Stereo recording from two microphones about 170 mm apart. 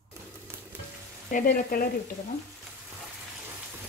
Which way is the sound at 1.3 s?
60° left (ahead or behind).